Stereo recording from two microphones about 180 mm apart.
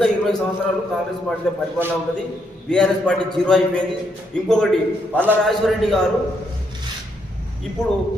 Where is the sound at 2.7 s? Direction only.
5° left (ahead or behind).